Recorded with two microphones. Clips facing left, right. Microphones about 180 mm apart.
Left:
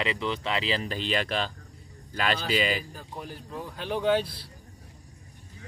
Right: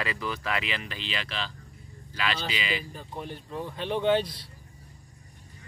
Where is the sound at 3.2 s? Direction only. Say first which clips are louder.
Right 3 dB; centre (ahead or behind).